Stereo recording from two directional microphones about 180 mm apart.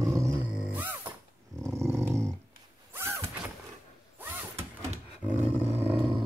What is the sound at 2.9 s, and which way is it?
Door, 15° right (ahead or behind).